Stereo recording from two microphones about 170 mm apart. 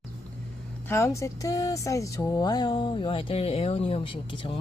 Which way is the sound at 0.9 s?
15° left (ahead or behind).